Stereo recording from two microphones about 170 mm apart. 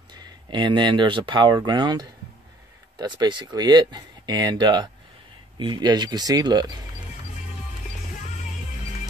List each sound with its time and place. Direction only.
0.1 s speech: 25° right (ahead or behind)